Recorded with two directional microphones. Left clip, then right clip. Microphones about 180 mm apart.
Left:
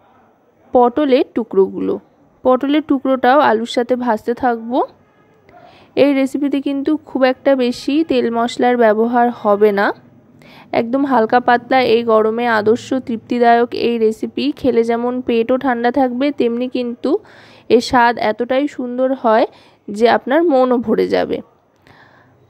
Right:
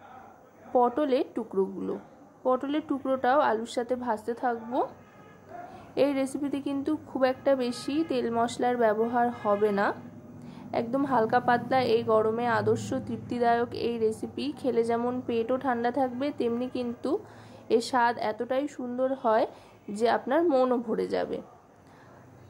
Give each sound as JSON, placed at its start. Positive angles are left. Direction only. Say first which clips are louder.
{"t": 0.7, "sound": "a woman's voice", "louder": "left 12 dB", "side_deg": 40}
{"t": 10.4, "sound": "a sound", "louder": "left 13 dB", "side_deg": 45}
{"t": 11.1, "sound": "a woman's voice", "louder": "left 11 dB", "side_deg": 40}
{"t": 20.4, "sound": "speech", "louder": "left 10 dB", "side_deg": 25}
{"t": 20.7, "sound": "speech", "louder": "left 13 dB", "side_deg": 45}